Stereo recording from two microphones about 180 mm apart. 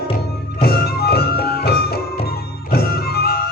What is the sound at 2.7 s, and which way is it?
Music, 60° left (ahead or behind).